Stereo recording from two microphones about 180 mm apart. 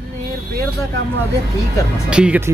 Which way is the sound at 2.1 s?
5° right (ahead or behind).